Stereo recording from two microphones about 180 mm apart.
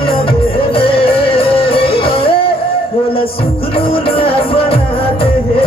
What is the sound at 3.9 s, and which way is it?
Music, 30° left (ahead or behind).